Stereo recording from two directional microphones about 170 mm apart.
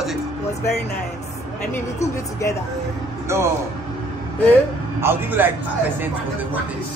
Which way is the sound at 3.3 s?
15° right (ahead or behind).